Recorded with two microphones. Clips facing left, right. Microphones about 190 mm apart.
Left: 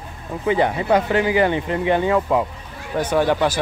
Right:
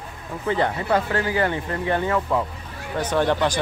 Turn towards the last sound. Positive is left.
turn(degrees=10)  # may be behind; listen again after turning